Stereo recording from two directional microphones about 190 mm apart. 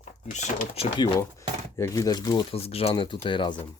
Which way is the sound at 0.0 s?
40° left (ahead or behind).